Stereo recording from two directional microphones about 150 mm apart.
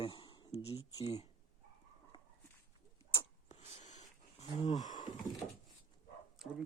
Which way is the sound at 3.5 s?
50° left (ahead or behind).